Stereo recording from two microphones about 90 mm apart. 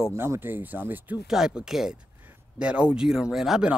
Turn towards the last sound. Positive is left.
turn(degrees=-5)  # may be behind; listen again after turning